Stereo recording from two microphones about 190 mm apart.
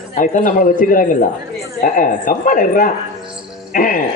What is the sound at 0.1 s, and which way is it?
A man's voice, 45° left (ahead or behind).